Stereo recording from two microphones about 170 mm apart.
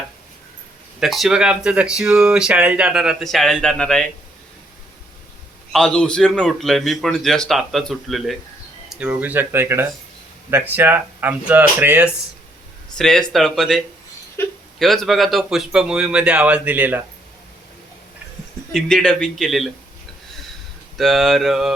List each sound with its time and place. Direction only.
0.9 s speech: centre (ahead or behind)
5.7 s speech: 5° left (ahead or behind); by 12.1 s 10° right (ahead or behind)
13.0 s speech: 5° left (ahead or behind)
18.7 s speech: centre (ahead or behind)
21.0 s speech: centre (ahead or behind)